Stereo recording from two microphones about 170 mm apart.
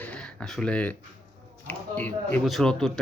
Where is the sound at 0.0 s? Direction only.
5° left (ahead or behind).